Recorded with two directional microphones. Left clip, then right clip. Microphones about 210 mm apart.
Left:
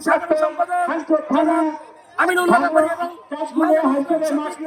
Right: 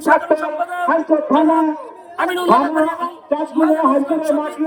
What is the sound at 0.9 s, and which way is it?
Speech, 25° right (ahead or behind).